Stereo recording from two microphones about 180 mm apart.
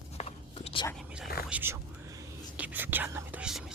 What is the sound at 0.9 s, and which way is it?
Whispering, centre (ahead or behind).